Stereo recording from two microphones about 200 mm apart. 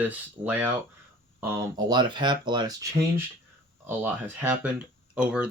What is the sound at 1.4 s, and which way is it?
Speech, 20° right (ahead or behind).